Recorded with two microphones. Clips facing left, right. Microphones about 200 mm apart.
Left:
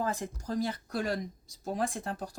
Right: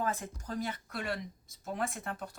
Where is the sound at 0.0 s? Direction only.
35° left (ahead or behind).